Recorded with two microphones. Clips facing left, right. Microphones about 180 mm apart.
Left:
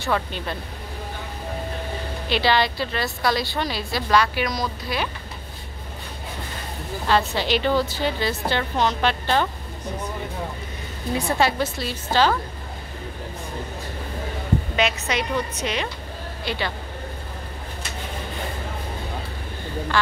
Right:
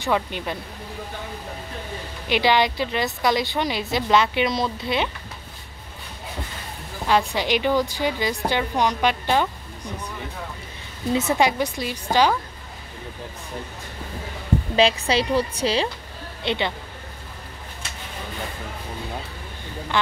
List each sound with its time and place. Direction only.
0.0 s a woman's voice: 15° right (ahead or behind)
2.2 s a woman's voice: 15° right (ahead or behind)
7.1 s a woman's voice: 15° right (ahead or behind)
11.1 s a woman's voice: 20° right (ahead or behind)
14.8 s a woman's voice: 30° right (ahead or behind)